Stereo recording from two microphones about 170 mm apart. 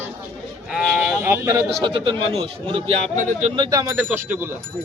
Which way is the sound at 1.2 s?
15° right (ahead or behind).